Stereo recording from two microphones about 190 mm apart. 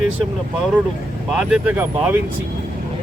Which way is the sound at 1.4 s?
5° right (ahead or behind).